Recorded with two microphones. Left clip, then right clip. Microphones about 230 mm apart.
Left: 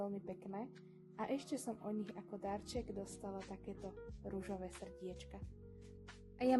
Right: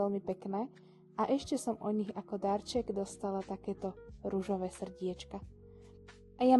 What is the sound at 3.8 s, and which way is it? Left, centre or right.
Speech, centre.